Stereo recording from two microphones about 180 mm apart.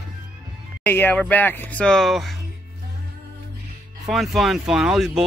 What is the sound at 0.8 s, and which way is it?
Speech, 10° left (ahead or behind).